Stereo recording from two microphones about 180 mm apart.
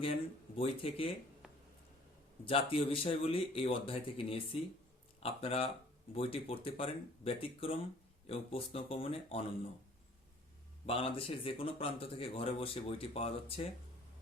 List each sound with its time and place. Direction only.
0.0 s a man's voice: 30° left (ahead or behind)
1.4 s a sound: 5° right (ahead or behind)
2.4 s a man's voice: 30° left (ahead or behind)
10.8 s a man's voice: 30° left (ahead or behind)